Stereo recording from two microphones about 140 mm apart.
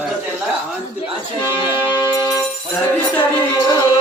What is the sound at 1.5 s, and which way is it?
Music, 30° left (ahead or behind).